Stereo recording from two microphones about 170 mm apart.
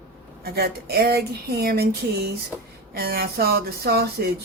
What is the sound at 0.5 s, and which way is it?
Speech, 65° right (ahead or behind).